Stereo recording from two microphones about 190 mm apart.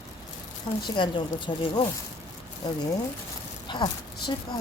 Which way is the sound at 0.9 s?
25° left (ahead or behind).